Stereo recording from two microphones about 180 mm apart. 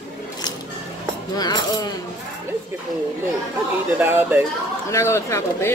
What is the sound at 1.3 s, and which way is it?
Speech, 20° left (ahead or behind).